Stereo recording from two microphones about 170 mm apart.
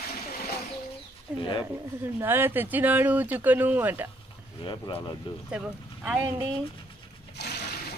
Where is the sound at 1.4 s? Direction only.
30° left (ahead or behind).